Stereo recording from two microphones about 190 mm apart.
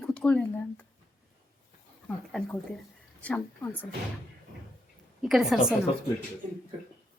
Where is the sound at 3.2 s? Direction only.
10° left (ahead or behind).